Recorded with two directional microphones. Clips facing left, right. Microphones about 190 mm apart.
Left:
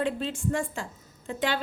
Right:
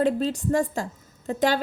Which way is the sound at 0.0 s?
40° right (ahead or behind).